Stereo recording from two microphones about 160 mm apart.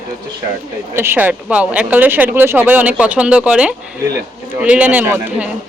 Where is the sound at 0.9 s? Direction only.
15° right (ahead or behind).